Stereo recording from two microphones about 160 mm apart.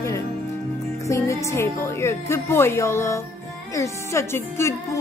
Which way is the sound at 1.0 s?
20° left (ahead or behind).